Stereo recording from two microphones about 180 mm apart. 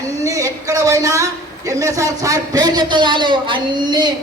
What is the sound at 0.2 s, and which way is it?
A man's voice, 15° right (ahead or behind).